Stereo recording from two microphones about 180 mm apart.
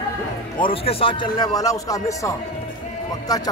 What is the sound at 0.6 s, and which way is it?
Speech, 30° left (ahead or behind).